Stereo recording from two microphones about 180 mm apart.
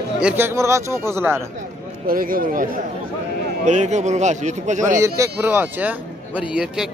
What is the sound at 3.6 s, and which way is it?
A man's voice, 40° right (ahead or behind).